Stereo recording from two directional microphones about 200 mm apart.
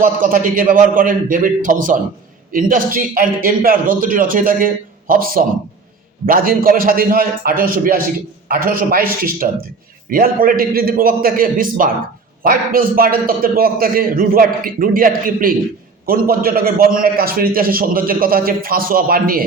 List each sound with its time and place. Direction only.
0.0 s a man's voice: 45° right (ahead or behind)